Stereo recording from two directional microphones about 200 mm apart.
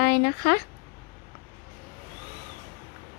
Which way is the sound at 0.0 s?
55° left (ahead or behind).